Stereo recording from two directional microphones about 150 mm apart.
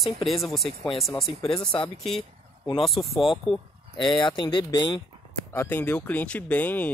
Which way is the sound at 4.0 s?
30° left (ahead or behind).